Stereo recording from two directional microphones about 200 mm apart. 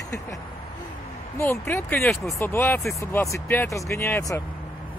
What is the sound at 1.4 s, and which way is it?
Speech, 15° left (ahead or behind).